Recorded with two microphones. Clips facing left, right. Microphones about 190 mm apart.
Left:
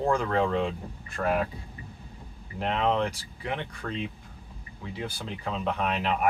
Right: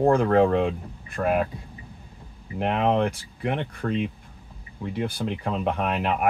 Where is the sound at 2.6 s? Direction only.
55° right (ahead or behind).